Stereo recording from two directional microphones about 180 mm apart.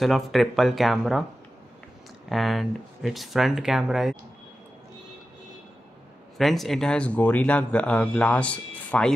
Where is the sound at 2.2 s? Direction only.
Centre (ahead or behind).